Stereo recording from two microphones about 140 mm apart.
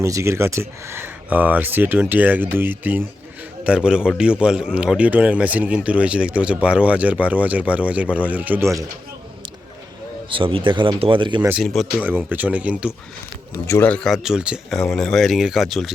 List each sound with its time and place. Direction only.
0.0 s speech: 20° right (ahead or behind)
10.2 s speech: 40° right (ahead or behind)
11.6 s speech: centre (ahead or behind)
12.0 s speech: 15° right (ahead or behind)
13.7 s speech: 15° left (ahead or behind); by 15.9 s centre (ahead or behind)